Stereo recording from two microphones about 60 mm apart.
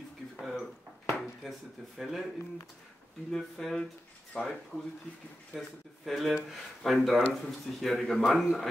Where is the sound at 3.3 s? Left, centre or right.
Centre.